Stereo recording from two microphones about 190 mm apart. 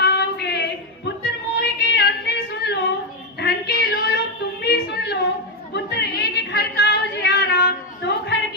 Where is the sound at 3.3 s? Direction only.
55° left (ahead or behind).